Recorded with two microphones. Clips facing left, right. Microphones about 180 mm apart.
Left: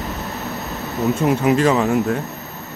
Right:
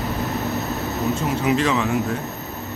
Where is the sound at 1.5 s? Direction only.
40° left (ahead or behind).